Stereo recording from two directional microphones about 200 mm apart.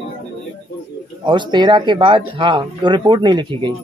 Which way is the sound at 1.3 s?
25° right (ahead or behind).